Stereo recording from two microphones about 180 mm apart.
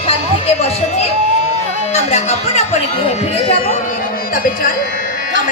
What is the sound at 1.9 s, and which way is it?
Speech, 35° left (ahead or behind).